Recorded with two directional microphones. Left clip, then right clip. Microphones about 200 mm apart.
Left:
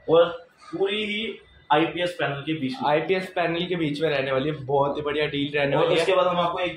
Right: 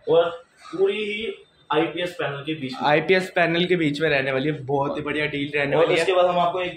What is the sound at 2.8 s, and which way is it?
Speech, 35° right (ahead or behind).